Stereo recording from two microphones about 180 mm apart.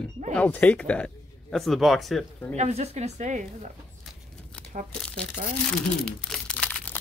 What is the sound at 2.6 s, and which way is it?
Speech, 35° right (ahead or behind).